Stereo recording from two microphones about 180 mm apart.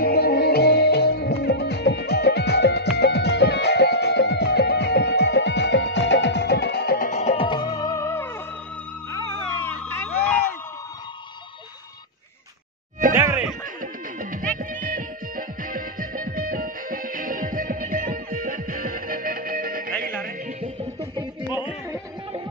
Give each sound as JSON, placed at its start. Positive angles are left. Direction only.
{"t": 0.0, "sound": "music", "side_deg": 60}
{"t": 7.1, "sound": "music", "side_deg": 35}
{"t": 9.1, "sound": "a sound", "side_deg": 15}
{"t": 13.1, "sound": "music", "side_deg": -10}
{"t": 14.6, "sound": "music", "side_deg": -50}
{"t": 20.6, "sound": "music", "side_deg": -30}